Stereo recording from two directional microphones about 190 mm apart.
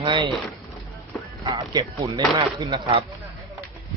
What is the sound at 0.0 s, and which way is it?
Speech, 25° right (ahead or behind).